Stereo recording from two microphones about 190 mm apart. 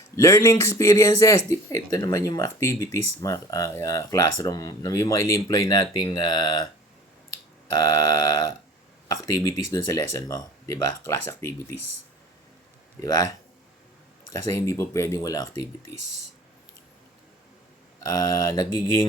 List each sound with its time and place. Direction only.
0.2 s speech: 15° left (ahead or behind)
7.7 s speech: 20° left (ahead or behind)
13.0 s speech: 20° left (ahead or behind)
14.3 s speech: 15° left (ahead or behind)
18.0 s speech: 15° left (ahead or behind)